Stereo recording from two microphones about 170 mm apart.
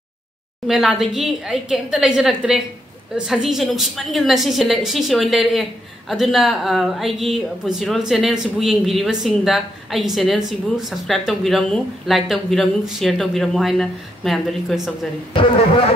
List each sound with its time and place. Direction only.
0.7 s a woman's voice: centre (ahead or behind)
15.3 s speech: 30° left (ahead or behind)